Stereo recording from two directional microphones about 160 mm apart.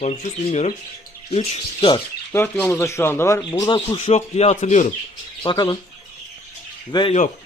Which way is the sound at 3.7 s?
30° left (ahead or behind).